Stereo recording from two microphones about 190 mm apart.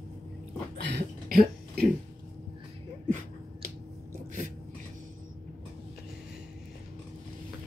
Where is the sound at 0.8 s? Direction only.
60° right (ahead or behind).